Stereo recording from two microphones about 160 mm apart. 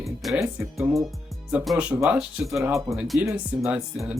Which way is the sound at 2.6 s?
15° right (ahead or behind).